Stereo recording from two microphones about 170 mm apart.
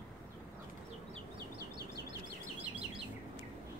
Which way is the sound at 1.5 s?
65° right (ahead or behind).